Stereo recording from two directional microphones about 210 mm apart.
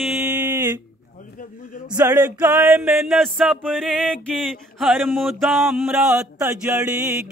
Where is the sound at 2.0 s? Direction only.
10° right (ahead or behind).